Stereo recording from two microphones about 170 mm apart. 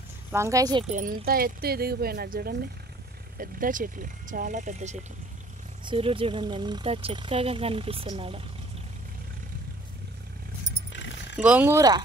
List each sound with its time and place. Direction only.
0.3 s speech: 20° right (ahead or behind)
0.9 s speech: 55° right (ahead or behind)
5.9 s speech: 30° right (ahead or behind)
10.9 s a sound: 90° left
11.4 s speech: 10° right (ahead or behind)